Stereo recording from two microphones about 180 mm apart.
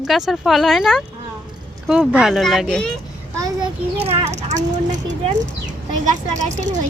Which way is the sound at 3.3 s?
20° right (ahead or behind).